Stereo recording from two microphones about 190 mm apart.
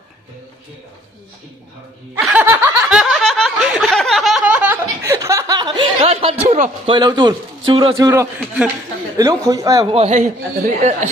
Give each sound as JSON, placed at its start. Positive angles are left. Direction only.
{"t": 2.2, "sound": "snicker", "side_deg": -10}
{"t": 9.4, "sound": "speech", "side_deg": -15}
{"t": 9.8, "sound": "speech", "side_deg": -30}